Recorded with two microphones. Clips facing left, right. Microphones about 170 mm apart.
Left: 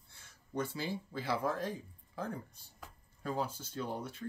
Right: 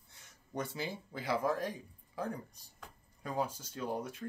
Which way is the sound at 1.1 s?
15° right (ahead or behind).